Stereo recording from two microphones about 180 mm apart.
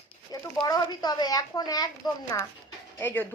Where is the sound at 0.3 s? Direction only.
20° left (ahead or behind).